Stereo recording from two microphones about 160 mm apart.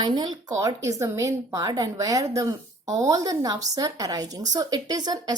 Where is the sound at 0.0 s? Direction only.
25° right (ahead or behind).